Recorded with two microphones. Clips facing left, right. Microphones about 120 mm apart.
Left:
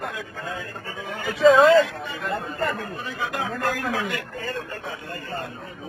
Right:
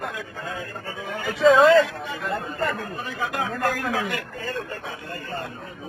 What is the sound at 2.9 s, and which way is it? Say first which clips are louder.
Speech: right 1 dB; 50° right (ahead or behind).